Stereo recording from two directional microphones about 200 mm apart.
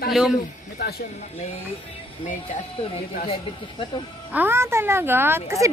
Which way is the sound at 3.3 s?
25° left (ahead or behind).